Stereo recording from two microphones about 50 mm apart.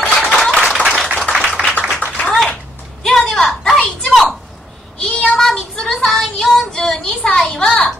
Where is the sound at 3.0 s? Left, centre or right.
Centre.